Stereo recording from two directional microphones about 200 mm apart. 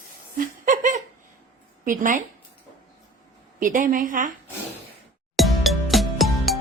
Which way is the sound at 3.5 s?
40° right (ahead or behind).